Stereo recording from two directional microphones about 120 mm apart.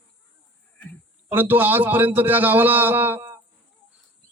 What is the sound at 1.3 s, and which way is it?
A man's voice, 15° right (ahead or behind).